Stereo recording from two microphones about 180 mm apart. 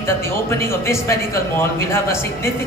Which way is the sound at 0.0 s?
15° left (ahead or behind).